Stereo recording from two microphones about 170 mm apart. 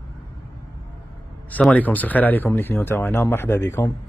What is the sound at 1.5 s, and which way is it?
A man's voice, 10° left (ahead or behind).